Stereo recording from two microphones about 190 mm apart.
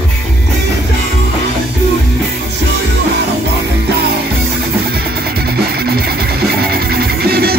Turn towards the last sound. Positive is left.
turn(degrees=-55)  # may be behind; listen again after turning